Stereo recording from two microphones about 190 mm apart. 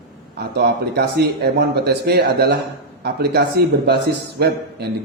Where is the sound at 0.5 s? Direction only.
60° right (ahead or behind).